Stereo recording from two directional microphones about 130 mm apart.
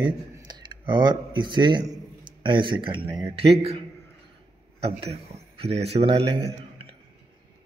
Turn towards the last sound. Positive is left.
turn(degrees=-50)  # may be behind; listen again after turning